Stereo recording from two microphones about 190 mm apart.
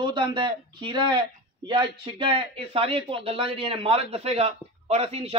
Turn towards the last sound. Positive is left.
turn(degrees=-30)  # may be behind; listen again after turning